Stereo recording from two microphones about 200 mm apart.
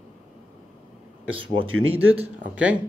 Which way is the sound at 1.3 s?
25° right (ahead or behind).